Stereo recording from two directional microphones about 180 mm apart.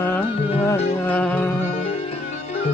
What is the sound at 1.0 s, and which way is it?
Music, 10° left (ahead or behind).